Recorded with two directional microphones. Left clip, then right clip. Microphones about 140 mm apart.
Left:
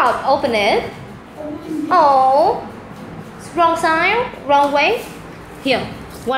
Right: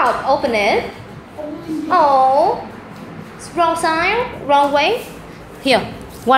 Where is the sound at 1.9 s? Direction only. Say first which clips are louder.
Even; 5° left (ahead or behind).